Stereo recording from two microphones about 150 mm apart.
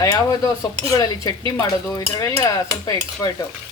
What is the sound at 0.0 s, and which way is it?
Speech, 25° left (ahead or behind).